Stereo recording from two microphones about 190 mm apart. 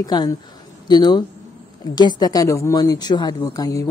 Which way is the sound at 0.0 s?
20° left (ahead or behind).